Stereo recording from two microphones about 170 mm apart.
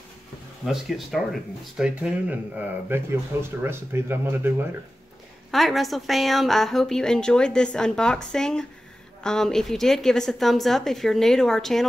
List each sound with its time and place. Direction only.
0.7 s a woman's voice: centre (ahead or behind)
5.5 s a woman's voice: centre (ahead or behind)